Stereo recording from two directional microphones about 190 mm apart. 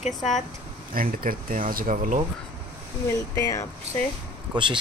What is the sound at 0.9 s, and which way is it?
Speech, 45° right (ahead or behind).